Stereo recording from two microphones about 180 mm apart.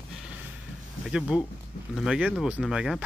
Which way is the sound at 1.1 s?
5° right (ahead or behind).